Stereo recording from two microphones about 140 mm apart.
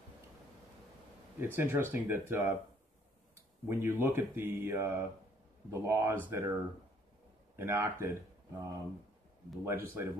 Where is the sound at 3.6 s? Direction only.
15° right (ahead or behind).